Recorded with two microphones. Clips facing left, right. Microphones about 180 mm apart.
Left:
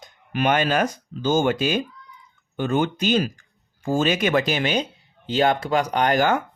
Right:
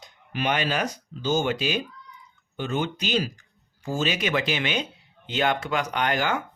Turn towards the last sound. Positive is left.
turn(degrees=45)  # may be behind; listen again after turning